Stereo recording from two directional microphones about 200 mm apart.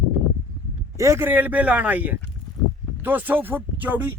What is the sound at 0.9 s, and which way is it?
Speech, 15° right (ahead or behind).